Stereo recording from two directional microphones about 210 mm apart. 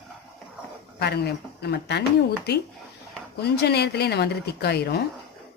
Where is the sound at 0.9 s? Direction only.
50° left (ahead or behind).